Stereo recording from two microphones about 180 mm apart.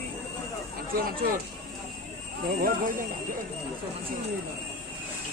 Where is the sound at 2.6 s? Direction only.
50° right (ahead or behind).